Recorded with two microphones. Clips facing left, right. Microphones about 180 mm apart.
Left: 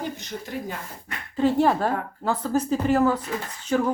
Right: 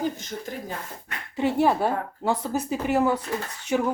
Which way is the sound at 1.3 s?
15° right (ahead or behind).